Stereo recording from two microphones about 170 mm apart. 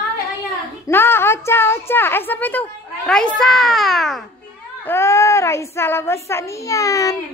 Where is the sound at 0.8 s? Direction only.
15° left (ahead or behind).